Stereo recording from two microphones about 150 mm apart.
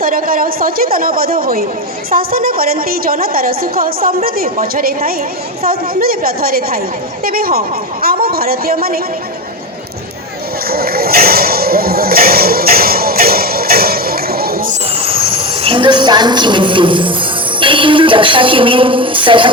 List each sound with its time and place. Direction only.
0.0 s a woman's voice: 70° right (ahead or behind)
10.7 s a sound: 90° right
15.0 s a woman's voice: 35° right (ahead or behind)